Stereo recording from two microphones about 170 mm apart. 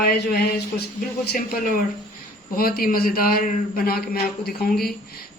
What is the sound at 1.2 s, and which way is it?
Speech, 70° left (ahead or behind).